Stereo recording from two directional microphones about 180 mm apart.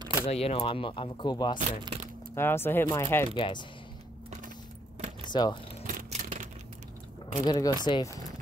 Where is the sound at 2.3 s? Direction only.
15° left (ahead or behind).